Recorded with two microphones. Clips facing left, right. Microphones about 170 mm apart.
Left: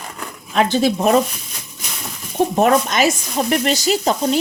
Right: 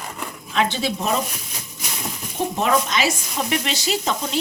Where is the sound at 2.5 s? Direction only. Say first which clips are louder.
Left 5 dB; 50° left (ahead or behind).